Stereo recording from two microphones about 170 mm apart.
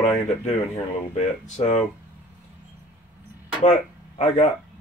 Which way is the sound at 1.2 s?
40° left (ahead or behind).